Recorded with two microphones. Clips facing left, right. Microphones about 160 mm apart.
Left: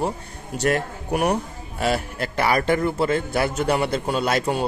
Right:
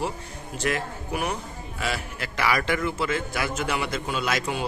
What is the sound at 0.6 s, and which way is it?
Speech, 45° left (ahead or behind).